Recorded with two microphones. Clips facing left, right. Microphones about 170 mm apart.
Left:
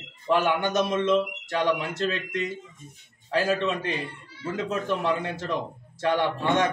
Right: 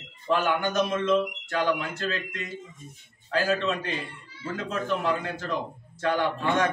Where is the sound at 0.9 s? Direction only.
20° left (ahead or behind).